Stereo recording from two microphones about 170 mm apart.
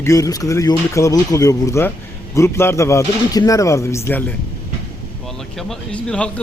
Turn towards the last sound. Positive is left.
turn(degrees=5)  # may be behind; listen again after turning